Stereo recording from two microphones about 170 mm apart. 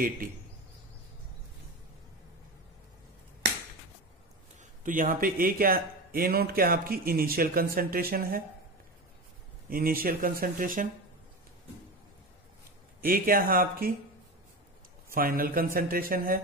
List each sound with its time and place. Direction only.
4.8 s speech: 50° right (ahead or behind)
9.7 s speech: 60° right (ahead or behind)
13.0 s speech: 55° right (ahead or behind)
15.0 s speech: 60° right (ahead or behind)